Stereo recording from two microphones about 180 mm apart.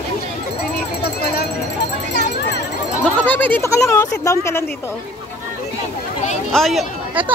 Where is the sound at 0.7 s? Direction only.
60° left (ahead or behind).